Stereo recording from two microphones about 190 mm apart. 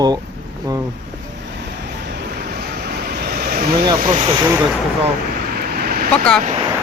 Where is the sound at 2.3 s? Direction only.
55° right (ahead or behind).